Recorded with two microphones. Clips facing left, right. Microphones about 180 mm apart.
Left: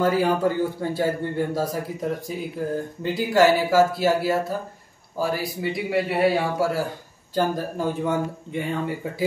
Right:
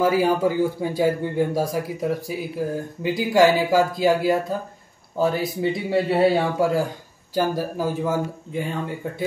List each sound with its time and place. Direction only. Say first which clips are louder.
0.0 s a man's voice: right 1 dB; 10° right (ahead or behind)